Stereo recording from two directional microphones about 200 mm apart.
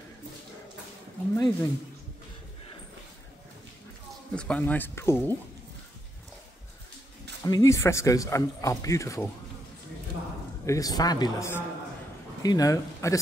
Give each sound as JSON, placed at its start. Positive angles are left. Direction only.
{"t": 1.3, "sound": "speech", "side_deg": 20}
{"t": 4.4, "sound": "speech", "side_deg": 5}
{"t": 7.4, "sound": "speech", "side_deg": 15}
{"t": 10.6, "sound": "speech", "side_deg": 15}